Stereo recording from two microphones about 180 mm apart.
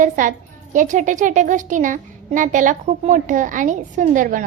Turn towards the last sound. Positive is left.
turn(degrees=-45)  # may be behind; listen again after turning